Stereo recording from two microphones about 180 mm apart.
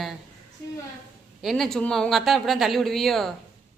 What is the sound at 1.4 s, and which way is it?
A woman's voice, centre (ahead or behind).